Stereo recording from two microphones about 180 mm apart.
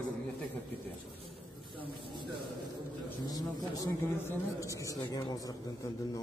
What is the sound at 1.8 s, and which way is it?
Speech, 25° right (ahead or behind).